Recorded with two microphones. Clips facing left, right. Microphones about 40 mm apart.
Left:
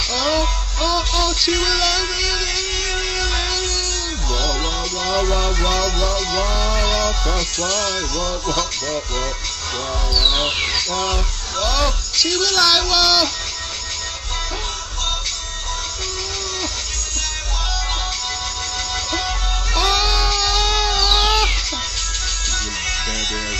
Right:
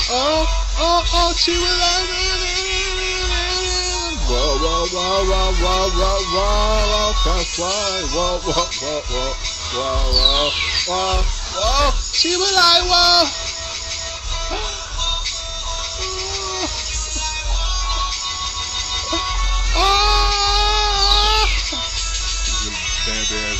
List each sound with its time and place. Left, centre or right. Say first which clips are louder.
0.1 s music: right 3 dB; centre
2.5 s a sound: right 1 dB; centre
4.3 s music: right 3 dB; right
4.7 s music: right 3 dB; right
6.3 s music: right 3 dB; centre
6.9 s music: right 1 dB; right
7.7 s music: left 1 dB; centre
10.2 s speech: even; centre
11.8 s music: right 2 dB; centre
19.7 s baby cry: right 3 dB; right; by 21.5 s centre